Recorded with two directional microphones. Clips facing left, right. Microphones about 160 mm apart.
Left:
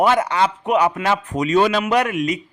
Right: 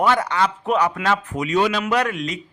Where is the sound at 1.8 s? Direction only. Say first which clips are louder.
Left 2 dB; 15° left (ahead or behind).